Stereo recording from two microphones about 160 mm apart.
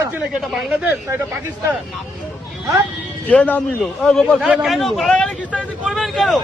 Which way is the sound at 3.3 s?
10° left (ahead or behind).